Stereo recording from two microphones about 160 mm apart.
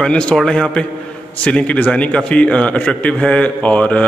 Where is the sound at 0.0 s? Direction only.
5° left (ahead or behind).